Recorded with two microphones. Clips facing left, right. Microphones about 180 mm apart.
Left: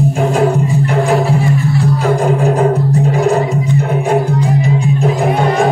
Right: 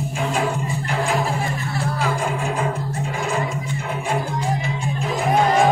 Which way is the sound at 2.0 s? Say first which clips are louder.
Left 8 dB; 45° left (ahead or behind).